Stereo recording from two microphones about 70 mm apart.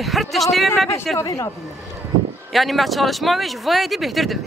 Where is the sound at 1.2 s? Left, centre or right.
Left.